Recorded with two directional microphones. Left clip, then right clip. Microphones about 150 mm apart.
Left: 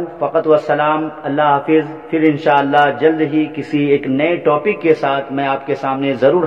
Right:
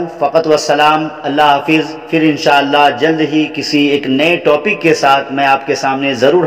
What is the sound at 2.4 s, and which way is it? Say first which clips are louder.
A man's voice: right 3 dB; 30° right (ahead or behind).